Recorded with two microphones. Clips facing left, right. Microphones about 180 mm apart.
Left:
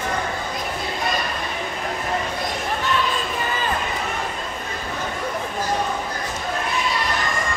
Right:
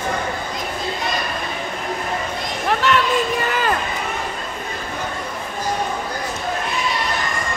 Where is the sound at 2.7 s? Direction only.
75° right (ahead or behind).